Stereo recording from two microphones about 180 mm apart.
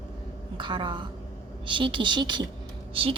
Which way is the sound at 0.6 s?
25° right (ahead or behind).